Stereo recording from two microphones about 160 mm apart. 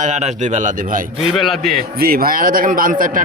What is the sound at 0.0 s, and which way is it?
Speech, 45° right (ahead or behind).